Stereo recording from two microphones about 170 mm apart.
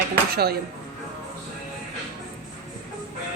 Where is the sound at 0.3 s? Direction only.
70° right (ahead or behind).